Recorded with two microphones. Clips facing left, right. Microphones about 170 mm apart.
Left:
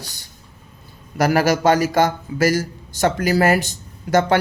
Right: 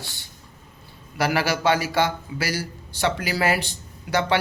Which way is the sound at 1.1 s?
45° left (ahead or behind).